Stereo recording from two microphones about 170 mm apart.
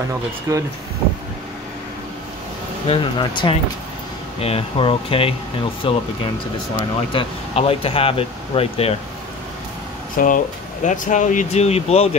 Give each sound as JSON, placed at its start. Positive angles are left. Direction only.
{"t": 0.5, "sound": "speech", "side_deg": -15}
{"t": 2.9, "sound": "speech", "side_deg": 30}
{"t": 7.1, "sound": "speech", "side_deg": 35}
{"t": 10.1, "sound": "speech", "side_deg": 50}